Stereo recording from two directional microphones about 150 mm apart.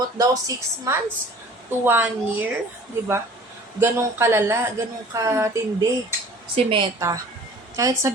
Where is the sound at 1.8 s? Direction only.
10° right (ahead or behind).